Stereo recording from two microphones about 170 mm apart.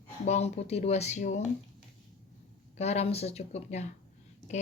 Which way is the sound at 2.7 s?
40° left (ahead or behind).